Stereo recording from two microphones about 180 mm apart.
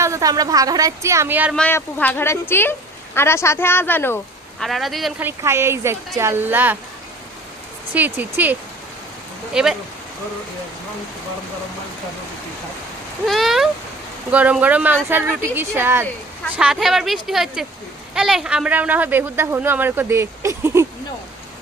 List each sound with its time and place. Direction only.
0.0 s speech: 20° right (ahead or behind)
1.5 s speech: 10° left (ahead or behind)
4.6 s speech: centre (ahead or behind)
5.2 s speech: 15° right (ahead or behind)
7.9 s speech: 10° right (ahead or behind)
9.5 s speech: 5° right (ahead or behind)
13.2 s speech: centre (ahead or behind)
16.6 s speech: 5° right (ahead or behind)